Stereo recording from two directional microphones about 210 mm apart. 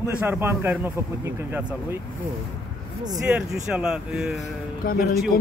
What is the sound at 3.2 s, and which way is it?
Speech, 5° right (ahead or behind).